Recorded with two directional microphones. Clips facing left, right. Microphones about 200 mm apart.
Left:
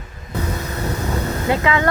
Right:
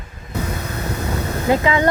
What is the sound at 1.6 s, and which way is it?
Speech, 20° right (ahead or behind).